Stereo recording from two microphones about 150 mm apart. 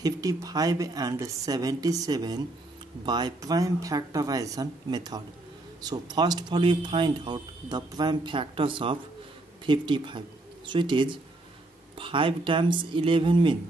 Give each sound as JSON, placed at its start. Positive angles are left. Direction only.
{"t": 0.0, "sound": "speech", "side_deg": -25}